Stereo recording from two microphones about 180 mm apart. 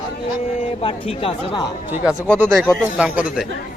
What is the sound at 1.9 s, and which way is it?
A man's voice, 5° right (ahead or behind).